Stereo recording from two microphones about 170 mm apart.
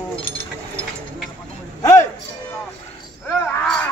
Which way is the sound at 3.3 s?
10° left (ahead or behind).